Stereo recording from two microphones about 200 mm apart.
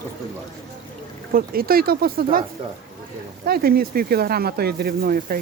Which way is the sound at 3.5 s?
50° right (ahead or behind).